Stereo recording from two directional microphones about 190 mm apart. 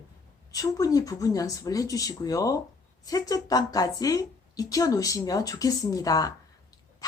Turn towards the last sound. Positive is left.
turn(degrees=20)  # may be behind; listen again after turning